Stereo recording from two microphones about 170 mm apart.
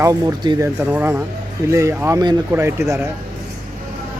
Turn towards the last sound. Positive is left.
turn(degrees=-15)  # may be behind; listen again after turning